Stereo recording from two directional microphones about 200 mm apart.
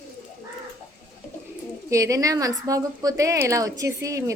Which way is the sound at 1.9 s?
15° right (ahead or behind).